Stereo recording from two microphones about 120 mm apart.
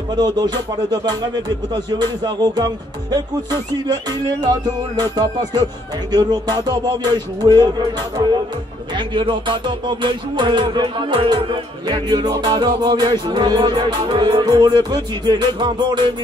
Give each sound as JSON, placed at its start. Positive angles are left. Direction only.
{"t": 0.1, "sound": "music", "side_deg": -35}
{"t": 3.7, "sound": "music", "side_deg": -35}
{"t": 8.9, "sound": "music", "side_deg": -40}